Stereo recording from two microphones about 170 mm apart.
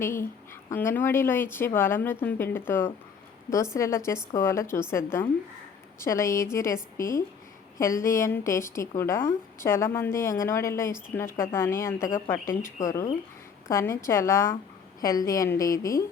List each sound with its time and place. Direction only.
0.0 s a woman's voice: 15° left (ahead or behind)